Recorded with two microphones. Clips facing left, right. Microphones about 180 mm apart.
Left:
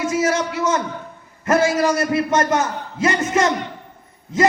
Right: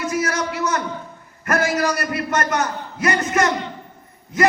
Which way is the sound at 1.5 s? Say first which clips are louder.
Left 4 dB; 25° left (ahead or behind).